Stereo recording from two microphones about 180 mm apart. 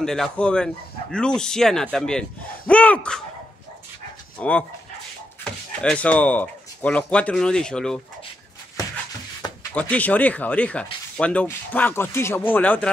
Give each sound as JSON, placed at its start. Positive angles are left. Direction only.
{"t": 0.0, "sound": "speech", "side_deg": 5}
{"t": 4.4, "sound": "speech", "side_deg": 10}
{"t": 9.4, "sound": "a sound", "side_deg": 20}
{"t": 9.8, "sound": "speech", "side_deg": 10}